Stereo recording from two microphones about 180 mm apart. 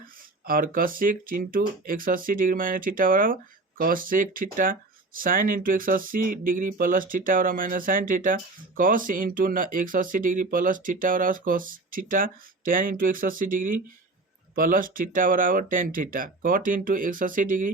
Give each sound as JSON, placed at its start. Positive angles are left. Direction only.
{"t": 0.0, "sound": "speech", "side_deg": -55}